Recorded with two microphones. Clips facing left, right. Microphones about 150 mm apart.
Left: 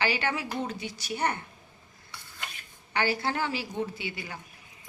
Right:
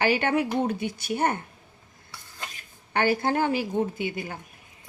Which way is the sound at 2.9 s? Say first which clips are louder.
Right 5 dB; 50° right (ahead or behind).